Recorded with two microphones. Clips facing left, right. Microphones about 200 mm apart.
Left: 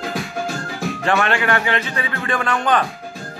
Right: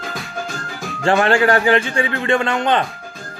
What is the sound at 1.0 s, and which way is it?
A man's voice, 30° right (ahead or behind).